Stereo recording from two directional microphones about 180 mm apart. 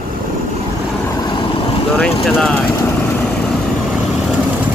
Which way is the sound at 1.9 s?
5° left (ahead or behind).